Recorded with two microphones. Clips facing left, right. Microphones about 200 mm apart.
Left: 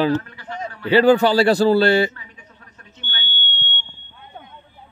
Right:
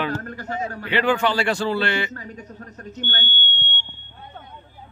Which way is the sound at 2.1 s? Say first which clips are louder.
Right 10 dB; 40° right (ahead or behind).